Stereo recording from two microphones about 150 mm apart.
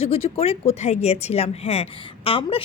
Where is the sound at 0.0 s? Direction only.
40° left (ahead or behind).